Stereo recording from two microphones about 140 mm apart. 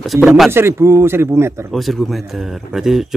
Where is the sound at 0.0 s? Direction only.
Centre (ahead or behind).